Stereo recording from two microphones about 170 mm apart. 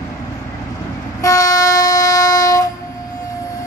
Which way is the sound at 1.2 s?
20° left (ahead or behind).